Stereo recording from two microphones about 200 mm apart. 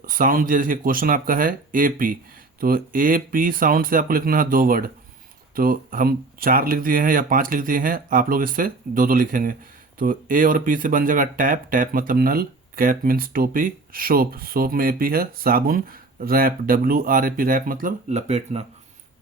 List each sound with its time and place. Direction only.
0.0 s speech: 45° right (ahead or behind)